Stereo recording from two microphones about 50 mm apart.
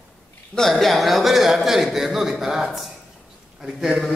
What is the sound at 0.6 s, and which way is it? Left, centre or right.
A man's voice, centre.